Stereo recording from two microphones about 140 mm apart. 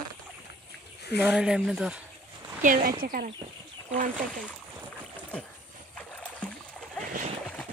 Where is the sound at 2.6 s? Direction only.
85° right.